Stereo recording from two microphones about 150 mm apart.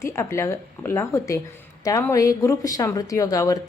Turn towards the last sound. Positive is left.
turn(degrees=25)  # may be behind; listen again after turning